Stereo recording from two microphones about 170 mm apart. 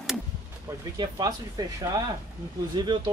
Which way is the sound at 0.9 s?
25° right (ahead or behind).